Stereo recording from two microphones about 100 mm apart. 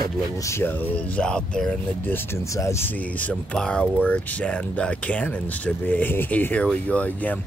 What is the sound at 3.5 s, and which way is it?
Speech, 10° left (ahead or behind).